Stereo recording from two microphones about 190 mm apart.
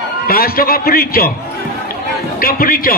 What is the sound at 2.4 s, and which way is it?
Speech, 50° left (ahead or behind).